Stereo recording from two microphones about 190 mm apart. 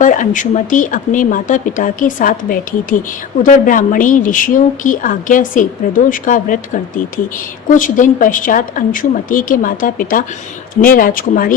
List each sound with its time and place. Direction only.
0.0 s a woman's voice: 45° left (ahead or behind)